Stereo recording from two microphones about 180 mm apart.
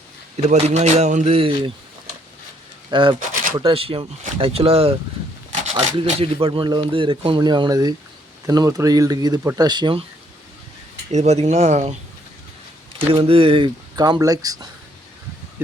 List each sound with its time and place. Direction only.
0.4 s speech: 40° right (ahead or behind)
2.9 s speech: 25° right (ahead or behind)
11.1 s speech: 40° right (ahead or behind)
13.0 s speech: 30° right (ahead or behind)